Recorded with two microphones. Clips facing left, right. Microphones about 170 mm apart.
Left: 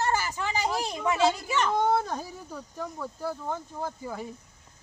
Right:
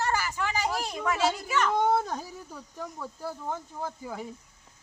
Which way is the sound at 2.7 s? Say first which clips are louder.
Left 2 dB; centre (ahead or behind).